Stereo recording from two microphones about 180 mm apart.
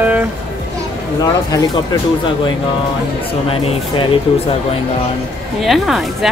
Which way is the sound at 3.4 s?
30° left (ahead or behind).